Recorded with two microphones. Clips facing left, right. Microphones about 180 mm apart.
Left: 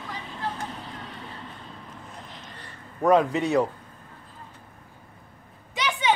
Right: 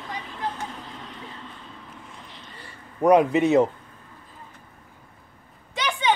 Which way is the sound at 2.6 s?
15° right (ahead or behind).